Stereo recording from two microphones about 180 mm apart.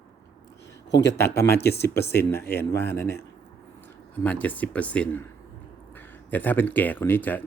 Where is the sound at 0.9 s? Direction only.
75° left (ahead or behind).